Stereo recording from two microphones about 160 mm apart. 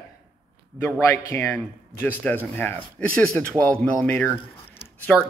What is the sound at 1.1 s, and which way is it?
A man's voice, 15° left (ahead or behind).